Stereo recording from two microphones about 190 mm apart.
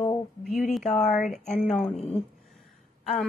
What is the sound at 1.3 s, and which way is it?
Speech, centre (ahead or behind).